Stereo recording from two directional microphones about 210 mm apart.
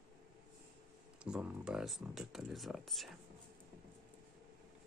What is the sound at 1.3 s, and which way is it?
Speech, 5° right (ahead or behind).